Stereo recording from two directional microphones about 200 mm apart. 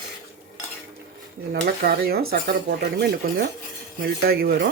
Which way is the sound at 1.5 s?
50° right (ahead or behind).